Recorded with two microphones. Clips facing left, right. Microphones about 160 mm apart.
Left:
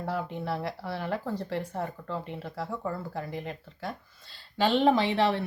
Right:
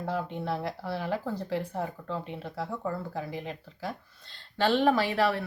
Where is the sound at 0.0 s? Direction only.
Centre (ahead or behind).